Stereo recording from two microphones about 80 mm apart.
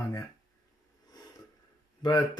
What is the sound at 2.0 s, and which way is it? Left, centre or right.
Speech, left.